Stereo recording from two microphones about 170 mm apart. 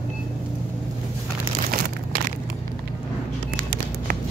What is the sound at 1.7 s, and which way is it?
Crumpling, 55° right (ahead or behind).